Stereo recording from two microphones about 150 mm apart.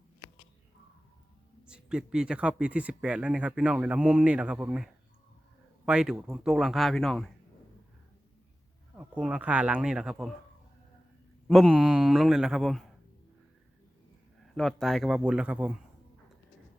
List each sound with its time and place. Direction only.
1.6 s a man's voice: 5° right (ahead or behind)
9.0 s speech: 10° right (ahead or behind)
11.4 s a man's voice: centre (ahead or behind)
14.5 s a man's voice: 5° left (ahead or behind)